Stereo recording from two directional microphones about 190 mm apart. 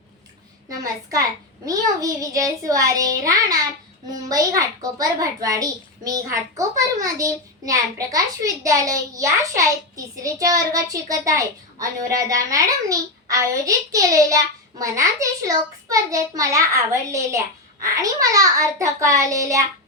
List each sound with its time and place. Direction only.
0.8 s a child's voice: 20° right (ahead or behind)